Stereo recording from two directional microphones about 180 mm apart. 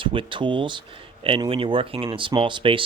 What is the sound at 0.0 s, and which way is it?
Speech, 30° right (ahead or behind).